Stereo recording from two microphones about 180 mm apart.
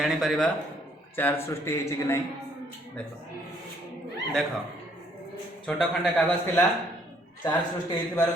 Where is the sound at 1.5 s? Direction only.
15° left (ahead or behind).